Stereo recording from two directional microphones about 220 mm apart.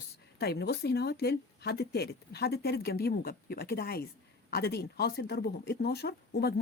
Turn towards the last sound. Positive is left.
turn(degrees=45)  # may be behind; listen again after turning